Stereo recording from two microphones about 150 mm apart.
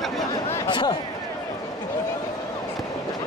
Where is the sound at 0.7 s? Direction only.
30° left (ahead or behind).